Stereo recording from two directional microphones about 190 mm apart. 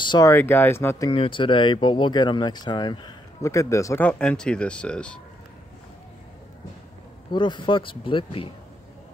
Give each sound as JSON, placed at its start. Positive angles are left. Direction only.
{"t": 0.0, "sound": "speech", "side_deg": 20}
{"t": 7.2, "sound": "speech", "side_deg": 25}